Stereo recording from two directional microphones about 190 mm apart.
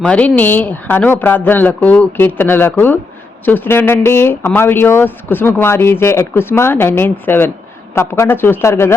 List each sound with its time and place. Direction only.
0.0 s speech: 5° left (ahead or behind)